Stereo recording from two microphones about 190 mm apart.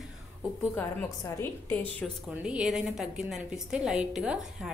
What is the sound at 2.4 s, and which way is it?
A woman's voice, 5° right (ahead or behind).